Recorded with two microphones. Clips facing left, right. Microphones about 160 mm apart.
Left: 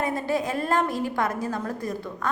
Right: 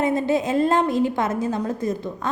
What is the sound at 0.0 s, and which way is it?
A woman's voice, 25° right (ahead or behind).